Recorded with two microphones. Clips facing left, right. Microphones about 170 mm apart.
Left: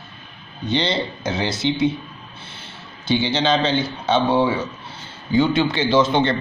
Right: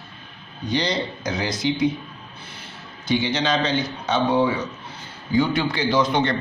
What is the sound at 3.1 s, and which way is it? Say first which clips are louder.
A man's voice: left 3 dB; 30° left (ahead or behind).